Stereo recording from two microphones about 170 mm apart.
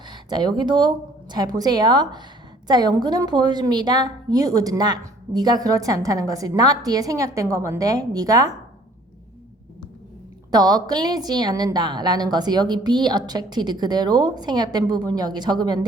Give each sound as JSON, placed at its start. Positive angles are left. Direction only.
{"t": 0.1, "sound": "a woman's voice", "side_deg": -25}
{"t": 10.5, "sound": "a woman's voice", "side_deg": -25}